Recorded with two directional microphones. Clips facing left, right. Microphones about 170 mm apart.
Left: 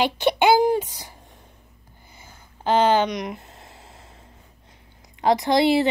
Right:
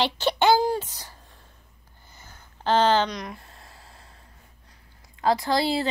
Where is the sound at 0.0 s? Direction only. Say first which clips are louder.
Left 3 dB; 10° left (ahead or behind).